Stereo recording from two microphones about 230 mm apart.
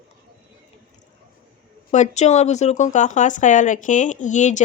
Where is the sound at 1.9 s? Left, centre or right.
Left.